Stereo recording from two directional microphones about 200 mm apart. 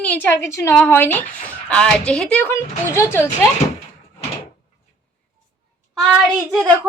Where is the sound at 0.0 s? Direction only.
10° left (ahead or behind).